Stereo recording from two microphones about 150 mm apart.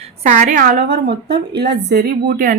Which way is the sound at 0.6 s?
85° right.